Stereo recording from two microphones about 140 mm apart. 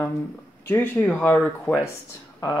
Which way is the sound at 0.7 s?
10° left (ahead or behind).